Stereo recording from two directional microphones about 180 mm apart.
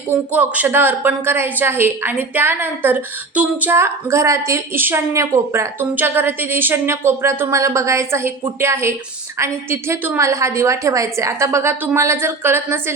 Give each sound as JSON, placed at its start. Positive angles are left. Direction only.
{"t": 0.1, "sound": "a woman's voice", "side_deg": -10}